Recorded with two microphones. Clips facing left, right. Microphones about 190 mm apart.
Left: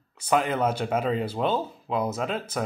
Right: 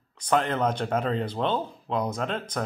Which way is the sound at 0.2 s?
10° left (ahead or behind).